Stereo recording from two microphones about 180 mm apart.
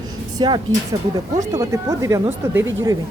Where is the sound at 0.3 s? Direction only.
25° right (ahead or behind).